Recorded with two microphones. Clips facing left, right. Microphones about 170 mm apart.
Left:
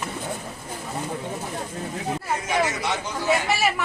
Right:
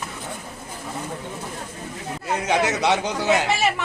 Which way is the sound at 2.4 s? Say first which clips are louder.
Right 5 dB; 75° right (ahead or behind).